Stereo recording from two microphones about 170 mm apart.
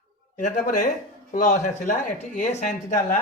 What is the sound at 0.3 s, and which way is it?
Speech, 50° left (ahead or behind).